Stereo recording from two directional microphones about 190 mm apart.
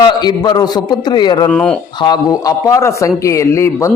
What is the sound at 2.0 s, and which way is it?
A man's voice, 20° left (ahead or behind).